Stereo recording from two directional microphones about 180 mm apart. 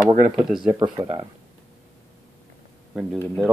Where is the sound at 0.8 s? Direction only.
25° right (ahead or behind).